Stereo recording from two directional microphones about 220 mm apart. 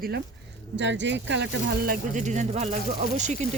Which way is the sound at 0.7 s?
55° right (ahead or behind).